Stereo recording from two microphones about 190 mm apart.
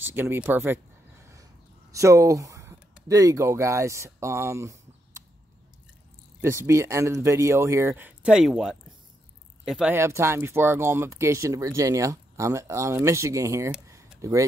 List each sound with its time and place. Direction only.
0.1 s speech: 10° right (ahead or behind)
6.4 s speech: 15° right (ahead or behind)